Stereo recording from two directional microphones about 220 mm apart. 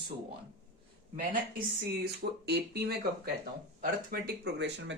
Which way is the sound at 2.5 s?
45° right (ahead or behind).